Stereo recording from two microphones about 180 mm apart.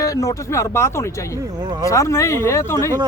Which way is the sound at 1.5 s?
20° right (ahead or behind).